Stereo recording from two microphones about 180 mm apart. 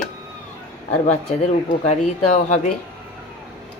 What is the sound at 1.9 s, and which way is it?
Speech, 40° left (ahead or behind).